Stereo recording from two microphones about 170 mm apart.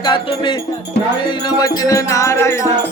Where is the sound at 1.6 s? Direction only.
20° left (ahead or behind).